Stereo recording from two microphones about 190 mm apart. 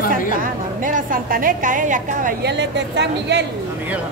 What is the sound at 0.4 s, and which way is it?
A woman's voice, 45° right (ahead or behind).